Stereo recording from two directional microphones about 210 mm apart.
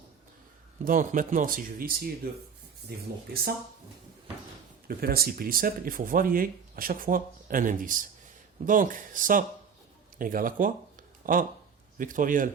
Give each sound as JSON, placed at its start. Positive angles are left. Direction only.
{"t": 0.9, "sound": "speech", "side_deg": -40}
{"t": 4.9, "sound": "speech", "side_deg": -45}